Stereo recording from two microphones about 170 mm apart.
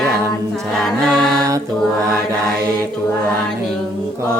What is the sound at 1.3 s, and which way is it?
Mantra, 20° right (ahead or behind).